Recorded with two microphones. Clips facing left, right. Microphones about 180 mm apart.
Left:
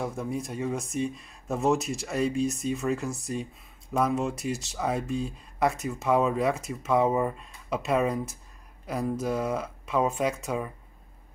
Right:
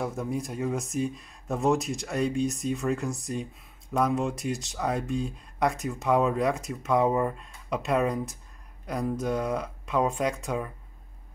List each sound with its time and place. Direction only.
0.0 s speech: centre (ahead or behind)